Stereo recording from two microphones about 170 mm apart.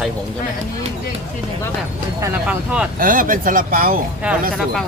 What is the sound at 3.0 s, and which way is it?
Speech, 55° right (ahead or behind).